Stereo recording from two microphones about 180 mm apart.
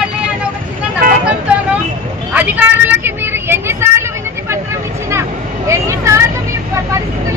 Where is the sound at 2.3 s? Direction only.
10° right (ahead or behind).